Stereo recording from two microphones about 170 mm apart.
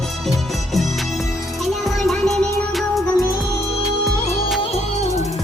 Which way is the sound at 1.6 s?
Centre (ahead or behind).